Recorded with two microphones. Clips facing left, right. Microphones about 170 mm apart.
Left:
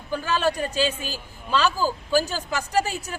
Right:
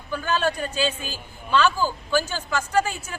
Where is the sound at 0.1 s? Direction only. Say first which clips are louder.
Even; 35° left (ahead or behind).